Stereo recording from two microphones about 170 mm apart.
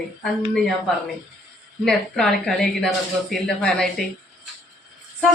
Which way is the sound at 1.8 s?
5° left (ahead or behind).